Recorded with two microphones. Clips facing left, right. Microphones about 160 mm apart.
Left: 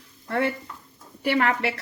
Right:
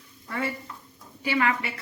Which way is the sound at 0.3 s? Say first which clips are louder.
Left 6 dB; 70° left (ahead or behind).